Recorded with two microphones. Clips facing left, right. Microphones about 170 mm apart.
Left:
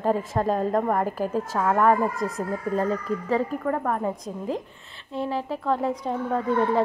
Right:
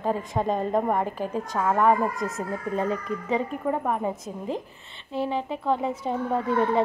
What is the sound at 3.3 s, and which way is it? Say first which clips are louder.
A woman's voice: left 1 dB; 10° right (ahead or behind).